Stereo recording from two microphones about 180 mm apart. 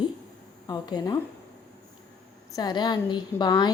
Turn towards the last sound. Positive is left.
turn(degrees=25)  # may be behind; listen again after turning